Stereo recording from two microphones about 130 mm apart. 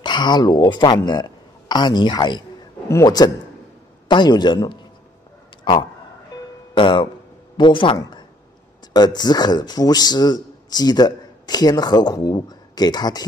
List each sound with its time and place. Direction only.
0.0 s a man's voice: 35° left (ahead or behind)